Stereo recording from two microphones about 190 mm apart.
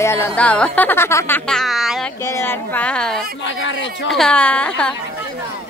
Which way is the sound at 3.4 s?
80° left.